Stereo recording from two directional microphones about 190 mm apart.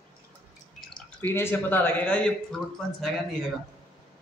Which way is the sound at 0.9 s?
10° left (ahead or behind).